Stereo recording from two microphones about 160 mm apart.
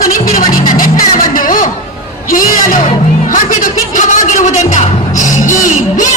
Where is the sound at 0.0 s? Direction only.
60° left (ahead or behind).